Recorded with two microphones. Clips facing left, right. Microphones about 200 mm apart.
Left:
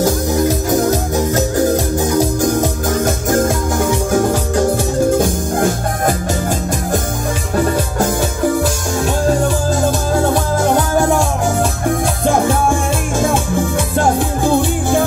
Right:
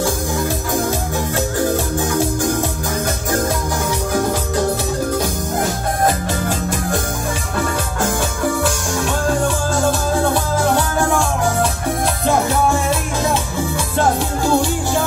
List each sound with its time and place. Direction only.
0.7 s music: 40° left (ahead or behind)
14.4 s music: 55° left (ahead or behind)